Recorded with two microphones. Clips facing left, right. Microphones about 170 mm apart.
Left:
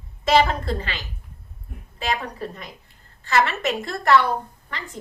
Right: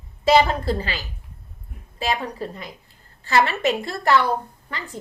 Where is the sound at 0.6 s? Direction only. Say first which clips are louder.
Right 3 dB; 35° right (ahead or behind).